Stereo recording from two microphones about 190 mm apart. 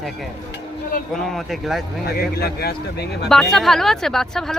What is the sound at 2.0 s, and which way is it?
Speech, 55° left (ahead or behind).